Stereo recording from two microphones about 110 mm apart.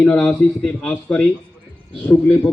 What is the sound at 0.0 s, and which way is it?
A man's voice, 5° left (ahead or behind).